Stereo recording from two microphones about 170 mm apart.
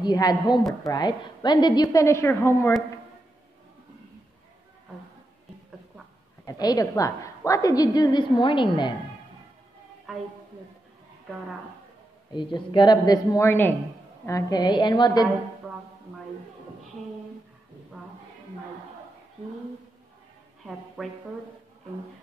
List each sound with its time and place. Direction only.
0.0 s a woman's voice: 25° left (ahead or behind)
6.4 s a woman's voice: 20° left (ahead or behind)
10.1 s speech: centre (ahead or behind)
12.5 s a woman's voice: 25° left (ahead or behind)
15.7 s a sound: centre (ahead or behind)
20.6 s speech: centre (ahead or behind)